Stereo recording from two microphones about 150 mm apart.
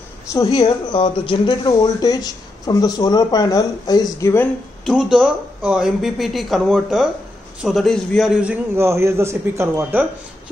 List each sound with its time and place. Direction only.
0.6 s speech: 30° left (ahead or behind)
4.8 s a man's voice: 5° right (ahead or behind)